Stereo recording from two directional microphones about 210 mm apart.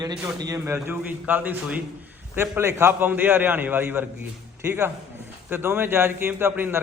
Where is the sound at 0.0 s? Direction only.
15° right (ahead or behind).